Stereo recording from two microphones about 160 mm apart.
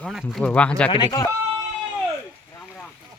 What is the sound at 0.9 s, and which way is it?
Speech, 30° left (ahead or behind).